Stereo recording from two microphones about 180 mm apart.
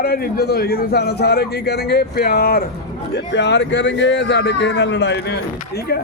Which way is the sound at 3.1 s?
75° left (ahead or behind).